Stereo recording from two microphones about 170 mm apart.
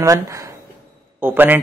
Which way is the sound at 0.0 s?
20° right (ahead or behind).